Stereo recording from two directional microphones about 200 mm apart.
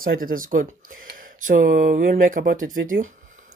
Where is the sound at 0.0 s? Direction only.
45° right (ahead or behind).